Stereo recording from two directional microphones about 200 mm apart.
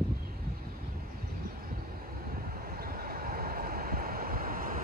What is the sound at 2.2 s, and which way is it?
Vehicle, 45° right (ahead or behind).